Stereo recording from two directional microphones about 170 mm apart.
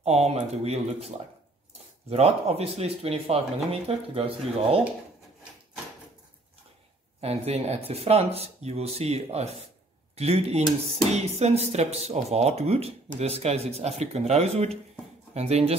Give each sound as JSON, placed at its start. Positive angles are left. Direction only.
{"t": 0.0, "sound": "speech", "side_deg": -40}
{"t": 7.2, "sound": "speech", "side_deg": -40}